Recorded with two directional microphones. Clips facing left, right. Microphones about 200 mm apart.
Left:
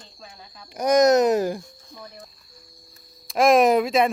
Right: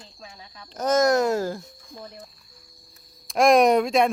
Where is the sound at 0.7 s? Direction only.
15° left (ahead or behind).